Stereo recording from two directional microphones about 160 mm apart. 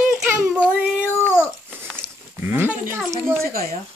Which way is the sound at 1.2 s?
10° left (ahead or behind).